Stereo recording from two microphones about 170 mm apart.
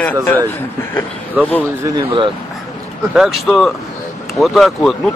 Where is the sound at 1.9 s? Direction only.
30° right (ahead or behind).